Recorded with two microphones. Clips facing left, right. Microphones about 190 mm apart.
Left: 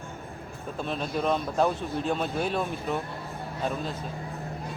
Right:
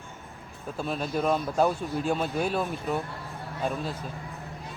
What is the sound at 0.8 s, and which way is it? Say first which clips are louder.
A man's voice: right 1 dB; 5° right (ahead or behind).